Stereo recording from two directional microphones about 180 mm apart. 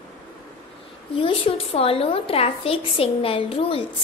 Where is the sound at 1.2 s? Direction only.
30° left (ahead or behind).